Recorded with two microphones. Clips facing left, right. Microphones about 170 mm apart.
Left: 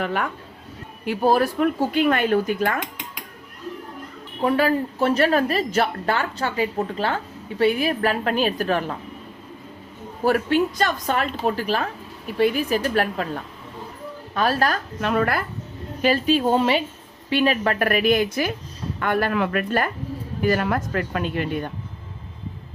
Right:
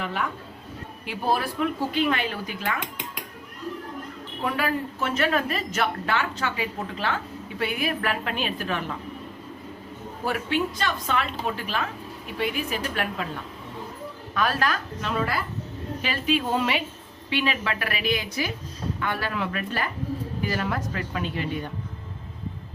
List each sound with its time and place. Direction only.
0.0 s speech: 55° left (ahead or behind)
4.4 s a woman's voice: 35° left (ahead or behind)
10.2 s a woman's voice: 45° left (ahead or behind)
15.0 s speech: 60° left (ahead or behind)
16.0 s a woman's voice: 40° left (ahead or behind)
17.2 s speech: 40° left (ahead or behind)